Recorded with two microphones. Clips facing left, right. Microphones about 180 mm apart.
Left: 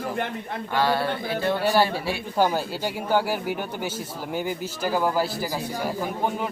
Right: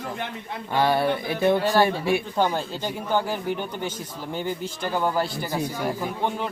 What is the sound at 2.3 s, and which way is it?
Speech, 10° left (ahead or behind).